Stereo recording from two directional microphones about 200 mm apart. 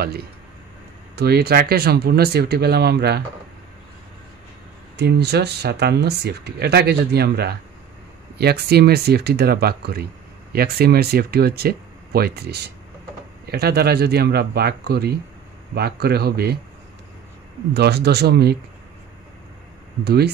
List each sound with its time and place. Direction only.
1.1 s speech: 50° right (ahead or behind)
4.9 s speech: 55° right (ahead or behind)
17.7 s speech: 55° right (ahead or behind)
20.1 s speech: 55° right (ahead or behind)